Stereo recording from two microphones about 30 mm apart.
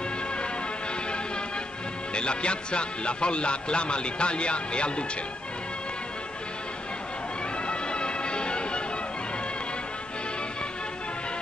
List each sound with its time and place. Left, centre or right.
2.1 s speech: left
7.6 s music: left